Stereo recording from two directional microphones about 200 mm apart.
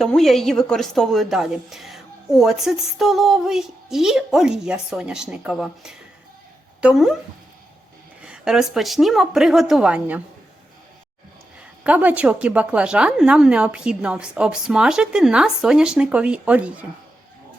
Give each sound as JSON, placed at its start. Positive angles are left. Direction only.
{"t": 0.0, "sound": "a woman's voice", "side_deg": 0}
{"t": 8.2, "sound": "a woman's voice", "side_deg": -5}
{"t": 11.8, "sound": "a woman's voice", "side_deg": -5}